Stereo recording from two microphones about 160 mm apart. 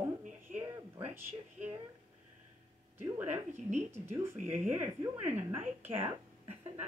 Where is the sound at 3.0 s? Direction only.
15° right (ahead or behind).